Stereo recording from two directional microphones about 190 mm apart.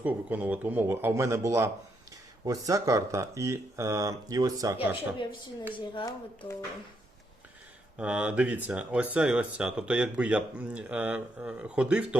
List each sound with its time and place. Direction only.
0.0 s speech: 10° right (ahead or behind)
5.7 s speech: 25° left (ahead or behind)
7.9 s speech: 5° right (ahead or behind)